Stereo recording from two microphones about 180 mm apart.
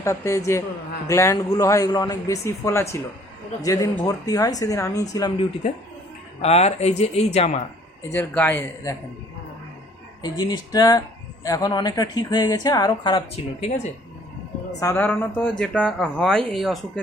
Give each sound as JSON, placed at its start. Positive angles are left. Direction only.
{"t": 0.0, "sound": "a man's voice", "side_deg": 15}
{"t": 6.4, "sound": "speech", "side_deg": 35}
{"t": 8.1, "sound": "a man's voice", "side_deg": 10}
{"t": 10.2, "sound": "a woman's voice", "side_deg": 20}
{"t": 14.8, "sound": "speech", "side_deg": 15}